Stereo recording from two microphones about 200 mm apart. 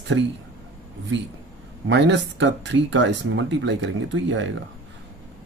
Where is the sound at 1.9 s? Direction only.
60° right (ahead or behind).